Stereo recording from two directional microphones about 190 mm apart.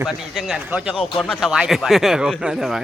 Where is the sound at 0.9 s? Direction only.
25° left (ahead or behind).